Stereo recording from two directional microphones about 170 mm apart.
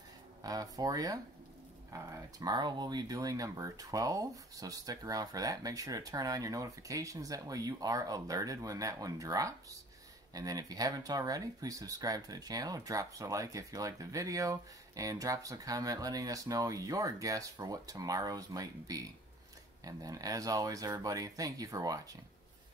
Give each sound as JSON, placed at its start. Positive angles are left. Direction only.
{"t": 0.4, "sound": "speech", "side_deg": -20}